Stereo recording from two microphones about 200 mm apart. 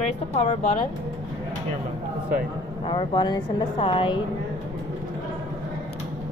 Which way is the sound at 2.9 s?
25° left (ahead or behind).